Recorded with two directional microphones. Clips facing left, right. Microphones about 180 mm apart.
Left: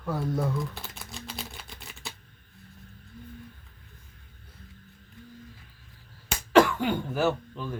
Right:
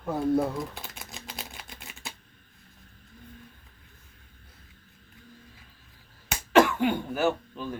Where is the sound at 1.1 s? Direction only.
Centre (ahead or behind).